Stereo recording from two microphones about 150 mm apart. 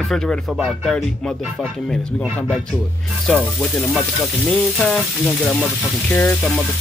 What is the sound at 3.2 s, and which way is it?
Speech, centre (ahead or behind).